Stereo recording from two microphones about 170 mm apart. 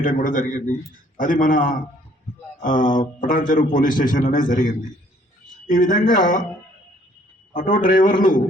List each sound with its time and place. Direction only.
0.0 s a man's voice: 55° left (ahead or behind)
7.5 s a man's voice: 50° left (ahead or behind)